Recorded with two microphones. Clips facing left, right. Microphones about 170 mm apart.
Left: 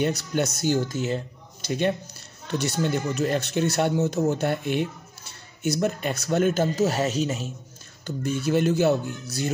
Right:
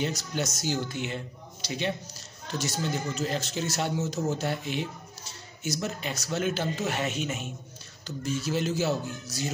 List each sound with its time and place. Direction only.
0.0 s speech: 60° left (ahead or behind)
0.8 s speech: 40° left (ahead or behind)
8.2 s speech: 60° left (ahead or behind)